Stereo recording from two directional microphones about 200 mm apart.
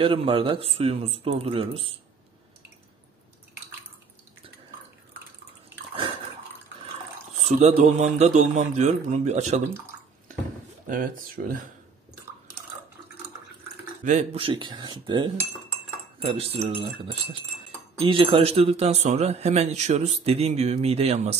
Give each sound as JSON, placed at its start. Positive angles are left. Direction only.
{"t": 0.0, "sound": "speech", "side_deg": -25}
{"t": 7.4, "sound": "speech", "side_deg": -35}
{"t": 10.9, "sound": "speech", "side_deg": -45}
{"t": 14.0, "sound": "speech", "side_deg": -30}